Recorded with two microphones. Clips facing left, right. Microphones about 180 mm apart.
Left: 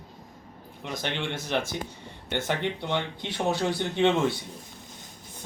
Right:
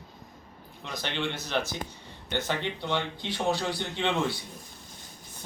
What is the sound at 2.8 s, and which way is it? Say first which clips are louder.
Speech: left 1 dB; 15° left (ahead or behind).